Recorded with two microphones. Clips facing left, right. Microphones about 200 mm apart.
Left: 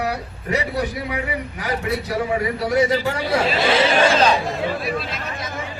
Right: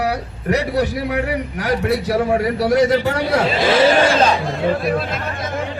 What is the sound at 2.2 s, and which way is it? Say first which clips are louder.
Speech: right 5 dB; 65° right (ahead or behind).